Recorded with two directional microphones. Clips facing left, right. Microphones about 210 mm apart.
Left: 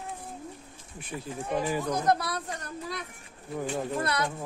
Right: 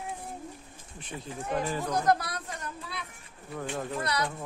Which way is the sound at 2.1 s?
30° left (ahead or behind).